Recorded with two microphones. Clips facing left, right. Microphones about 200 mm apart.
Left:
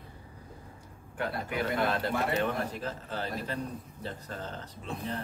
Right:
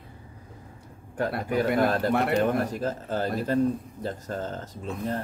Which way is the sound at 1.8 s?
40° right (ahead or behind).